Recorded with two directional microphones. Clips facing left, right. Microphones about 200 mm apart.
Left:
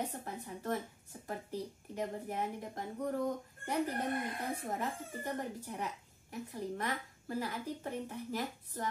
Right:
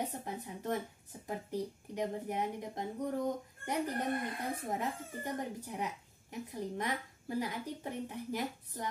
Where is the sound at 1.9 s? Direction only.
15° right (ahead or behind).